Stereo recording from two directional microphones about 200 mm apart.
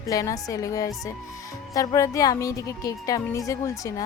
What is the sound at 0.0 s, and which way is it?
Speech, 15° left (ahead or behind).